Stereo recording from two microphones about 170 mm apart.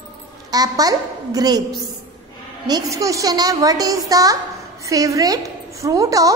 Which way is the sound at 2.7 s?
20° right (ahead or behind).